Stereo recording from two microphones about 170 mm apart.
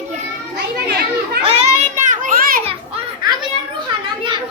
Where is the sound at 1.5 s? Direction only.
45° right (ahead or behind).